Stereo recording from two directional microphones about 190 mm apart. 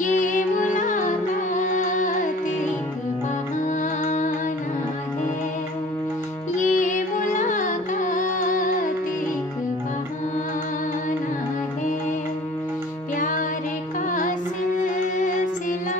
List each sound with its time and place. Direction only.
0.0 s music: 45° left (ahead or behind)
3.6 s music: 40° left (ahead or behind)
6.5 s music: 40° left (ahead or behind)
13.2 s music: 45° left (ahead or behind)